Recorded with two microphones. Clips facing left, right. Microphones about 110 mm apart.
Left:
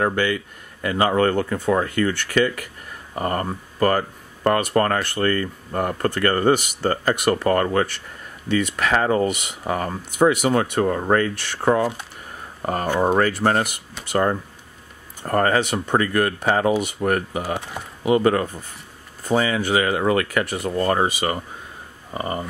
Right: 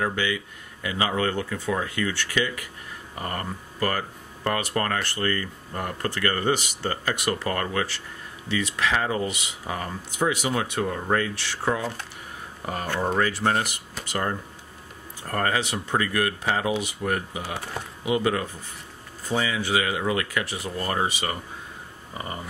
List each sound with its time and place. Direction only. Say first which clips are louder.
0.0 s speech: left 5 dB; 50° left (ahead or behind)
15.2 s speech: left 7 dB; 45° left (ahead or behind)